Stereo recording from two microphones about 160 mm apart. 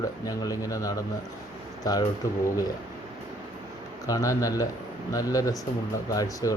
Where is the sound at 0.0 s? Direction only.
20° left (ahead or behind).